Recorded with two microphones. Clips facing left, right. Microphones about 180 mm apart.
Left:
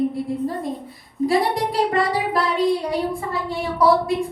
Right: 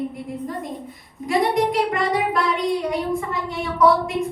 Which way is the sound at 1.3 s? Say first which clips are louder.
Right 2 dB; 35° left (ahead or behind).